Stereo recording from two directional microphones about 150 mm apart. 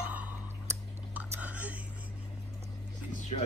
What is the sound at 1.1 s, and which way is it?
Whispering, 10° right (ahead or behind).